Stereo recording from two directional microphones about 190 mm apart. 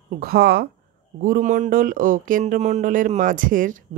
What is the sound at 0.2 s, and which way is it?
A woman's voice, 55° right (ahead or behind).